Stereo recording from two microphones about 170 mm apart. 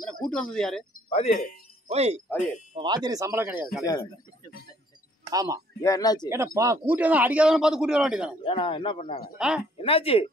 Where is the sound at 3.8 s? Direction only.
20° left (ahead or behind).